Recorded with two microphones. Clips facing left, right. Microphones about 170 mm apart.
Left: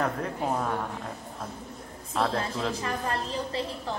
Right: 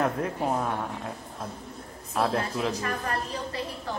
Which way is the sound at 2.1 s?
5° right (ahead or behind).